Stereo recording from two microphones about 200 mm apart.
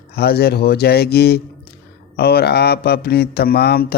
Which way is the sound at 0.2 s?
50° left (ahead or behind).